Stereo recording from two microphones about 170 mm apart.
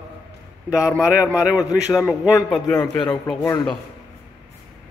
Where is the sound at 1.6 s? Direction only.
20° left (ahead or behind).